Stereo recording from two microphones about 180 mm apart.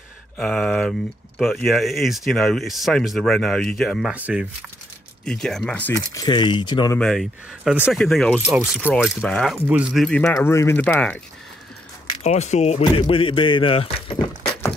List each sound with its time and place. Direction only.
0.4 s speech: 5° left (ahead or behind)
6.1 s speech: 25° left (ahead or behind)
7.0 s speech: centre (ahead or behind)
9.7 s speech: 5° right (ahead or behind)
12.2 s speech: 40° left (ahead or behind)